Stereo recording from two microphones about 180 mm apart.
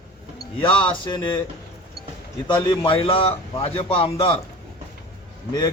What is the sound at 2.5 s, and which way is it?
A man's voice, 25° left (ahead or behind).